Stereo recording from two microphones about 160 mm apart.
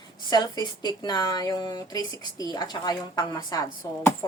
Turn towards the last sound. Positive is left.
turn(degrees=20)  # may be behind; listen again after turning